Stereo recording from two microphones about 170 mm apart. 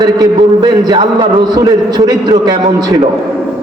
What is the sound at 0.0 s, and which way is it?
A man's voice, 25° right (ahead or behind).